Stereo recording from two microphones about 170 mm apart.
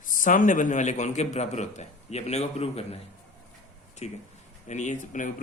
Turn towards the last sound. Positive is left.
turn(degrees=50)  # may be behind; listen again after turning